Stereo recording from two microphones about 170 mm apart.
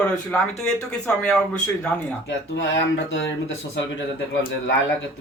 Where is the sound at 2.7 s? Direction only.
90° left.